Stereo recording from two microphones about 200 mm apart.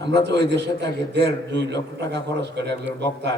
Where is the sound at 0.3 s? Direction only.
60° right (ahead or behind).